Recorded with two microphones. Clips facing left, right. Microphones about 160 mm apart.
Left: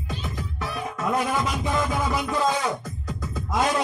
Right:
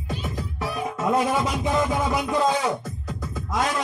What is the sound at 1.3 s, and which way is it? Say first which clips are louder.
Music: right 2 dB; 10° right (ahead or behind).